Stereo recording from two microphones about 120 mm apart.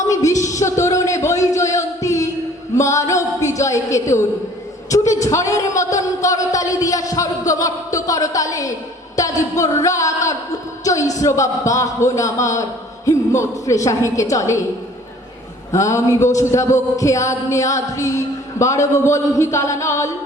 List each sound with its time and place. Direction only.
0.1 s speech: 25° left (ahead or behind)
0.4 s a sound: 25° left (ahead or behind)
2.7 s music: 25° left (ahead or behind)
3.1 s a sound: 25° left (ahead or behind)
4.9 s a man's voice: 25° left (ahead or behind)
15.7 s a man's voice: 25° left (ahead or behind)